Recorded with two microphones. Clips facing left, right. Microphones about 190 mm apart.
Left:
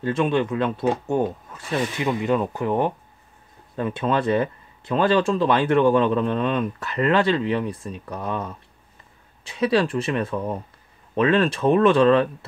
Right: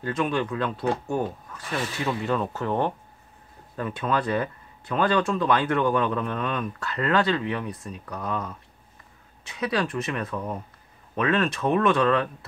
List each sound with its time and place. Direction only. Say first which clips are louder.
0.0 s speech: left 5 dB; 25° left (ahead or behind)